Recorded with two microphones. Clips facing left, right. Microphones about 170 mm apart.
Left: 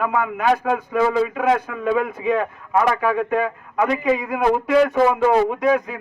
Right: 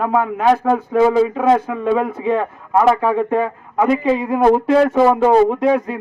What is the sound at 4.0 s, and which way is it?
A man's voice, 25° right (ahead or behind).